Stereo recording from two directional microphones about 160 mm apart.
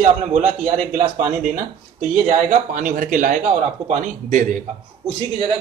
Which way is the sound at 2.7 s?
55° right (ahead or behind).